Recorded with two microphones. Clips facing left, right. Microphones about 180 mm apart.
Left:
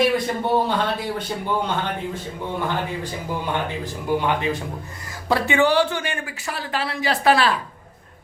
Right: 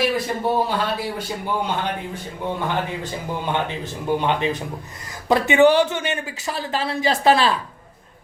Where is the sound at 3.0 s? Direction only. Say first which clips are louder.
Even; 20° right (ahead or behind).